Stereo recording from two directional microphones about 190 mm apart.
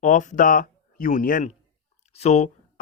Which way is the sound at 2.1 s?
35° left (ahead or behind).